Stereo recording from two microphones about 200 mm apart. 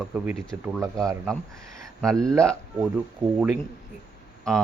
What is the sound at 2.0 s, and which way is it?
Speech, 5° left (ahead or behind).